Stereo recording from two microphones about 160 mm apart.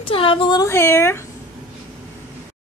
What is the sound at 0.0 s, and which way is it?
Speech, 35° left (ahead or behind).